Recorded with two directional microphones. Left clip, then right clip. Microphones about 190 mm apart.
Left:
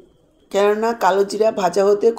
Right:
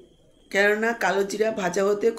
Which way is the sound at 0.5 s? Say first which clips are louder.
Left 4 dB; 15° left (ahead or behind).